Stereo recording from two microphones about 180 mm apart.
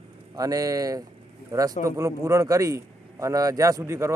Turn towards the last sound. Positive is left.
turn(degrees=-15)  # may be behind; listen again after turning